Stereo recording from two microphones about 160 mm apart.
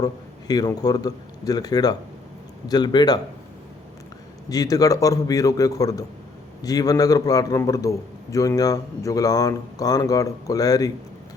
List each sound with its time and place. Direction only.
0.0 s a man's voice: 25° left (ahead or behind)
4.4 s a man's voice: 25° left (ahead or behind)